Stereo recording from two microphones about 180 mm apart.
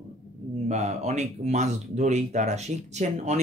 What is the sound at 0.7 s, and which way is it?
Speech, 40° right (ahead or behind).